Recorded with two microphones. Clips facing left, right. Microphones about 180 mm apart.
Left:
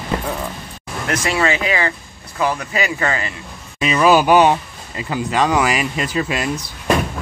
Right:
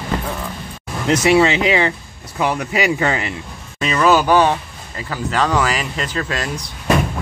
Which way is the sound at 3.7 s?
10° left (ahead or behind).